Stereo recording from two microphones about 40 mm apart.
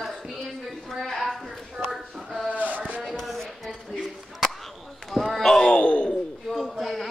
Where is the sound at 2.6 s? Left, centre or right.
Right.